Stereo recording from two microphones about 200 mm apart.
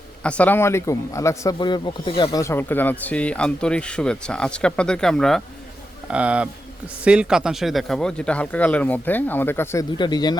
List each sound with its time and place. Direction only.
0.2 s a man's voice: 5° left (ahead or behind)